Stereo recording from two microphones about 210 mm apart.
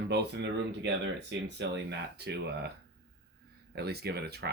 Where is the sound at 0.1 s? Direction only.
55° right (ahead or behind).